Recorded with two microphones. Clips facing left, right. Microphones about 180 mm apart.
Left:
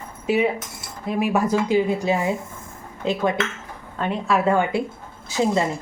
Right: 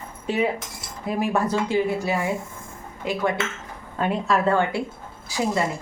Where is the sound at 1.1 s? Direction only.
Centre (ahead or behind).